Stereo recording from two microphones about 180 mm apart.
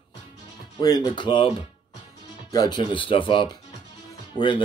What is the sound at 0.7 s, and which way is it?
Speech, 20° left (ahead or behind).